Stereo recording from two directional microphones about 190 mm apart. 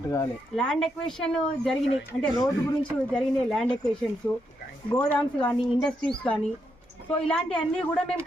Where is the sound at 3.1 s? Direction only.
5° left (ahead or behind).